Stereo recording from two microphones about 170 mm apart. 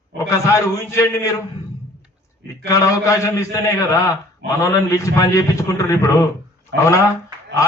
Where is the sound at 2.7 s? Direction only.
20° left (ahead or behind).